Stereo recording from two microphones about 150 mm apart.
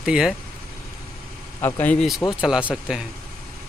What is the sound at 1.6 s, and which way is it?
Speech, 15° left (ahead or behind).